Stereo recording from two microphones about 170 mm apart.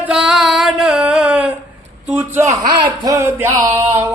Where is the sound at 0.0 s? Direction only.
5° right (ahead or behind).